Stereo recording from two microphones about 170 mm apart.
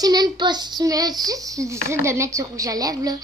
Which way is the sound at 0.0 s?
25° right (ahead or behind).